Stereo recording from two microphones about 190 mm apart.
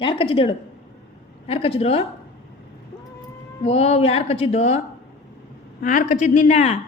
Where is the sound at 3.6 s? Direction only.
35° left (ahead or behind).